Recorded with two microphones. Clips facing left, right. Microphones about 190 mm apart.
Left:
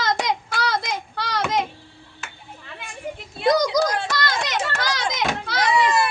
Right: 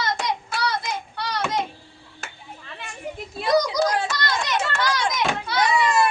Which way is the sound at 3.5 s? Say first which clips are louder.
Right 1 dB; 90° left.